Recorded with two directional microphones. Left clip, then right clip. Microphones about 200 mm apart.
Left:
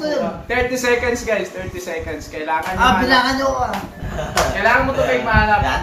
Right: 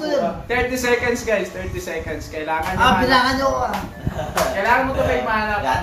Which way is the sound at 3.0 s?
10° left (ahead or behind).